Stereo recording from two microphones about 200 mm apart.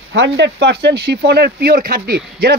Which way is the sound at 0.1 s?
60° right (ahead or behind).